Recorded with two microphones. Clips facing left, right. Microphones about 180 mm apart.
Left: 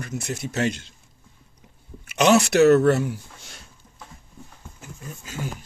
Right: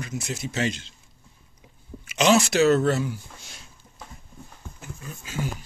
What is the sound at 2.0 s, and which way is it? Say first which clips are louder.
Speech: left 2 dB; 60° left (ahead or behind).